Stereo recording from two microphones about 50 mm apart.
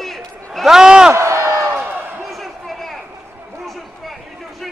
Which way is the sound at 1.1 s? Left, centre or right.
Right.